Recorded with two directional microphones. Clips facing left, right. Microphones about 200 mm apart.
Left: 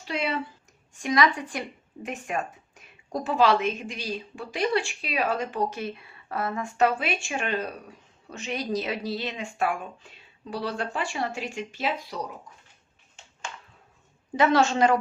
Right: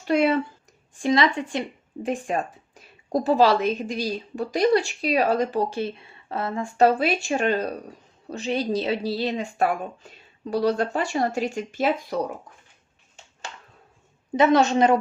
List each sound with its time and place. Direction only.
0.1 s speech: 50° right (ahead or behind)
0.9 s speech: 30° right (ahead or behind); by 12.2 s 45° right (ahead or behind)
14.3 s speech: 20° right (ahead or behind)